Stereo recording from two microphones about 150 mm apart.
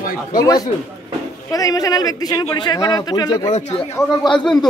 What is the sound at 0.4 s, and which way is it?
Speech, 25° left (ahead or behind).